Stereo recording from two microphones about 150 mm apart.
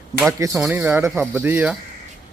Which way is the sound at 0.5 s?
10° right (ahead or behind).